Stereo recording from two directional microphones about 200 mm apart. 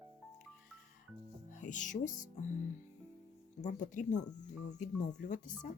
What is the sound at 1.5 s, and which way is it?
Music, 40° left (ahead or behind).